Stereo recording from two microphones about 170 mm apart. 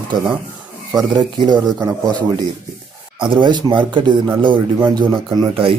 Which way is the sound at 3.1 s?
30° right (ahead or behind).